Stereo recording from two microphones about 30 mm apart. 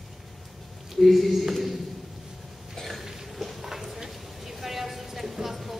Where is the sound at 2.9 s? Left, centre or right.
Centre.